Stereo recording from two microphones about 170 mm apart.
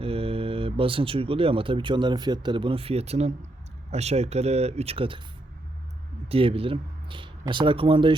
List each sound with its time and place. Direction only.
0.0 s speech: 35° right (ahead or behind)
6.2 s speech: 35° right (ahead or behind)